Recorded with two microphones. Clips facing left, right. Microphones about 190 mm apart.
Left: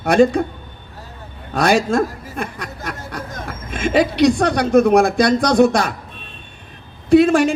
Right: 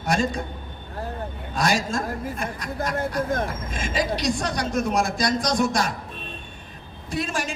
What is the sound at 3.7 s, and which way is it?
Speech, 65° left (ahead or behind).